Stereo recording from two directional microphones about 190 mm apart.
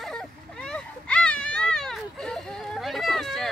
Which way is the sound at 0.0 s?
5° left (ahead or behind).